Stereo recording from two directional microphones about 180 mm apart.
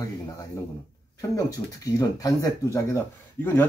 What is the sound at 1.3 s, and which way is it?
Speech, 20° left (ahead or behind).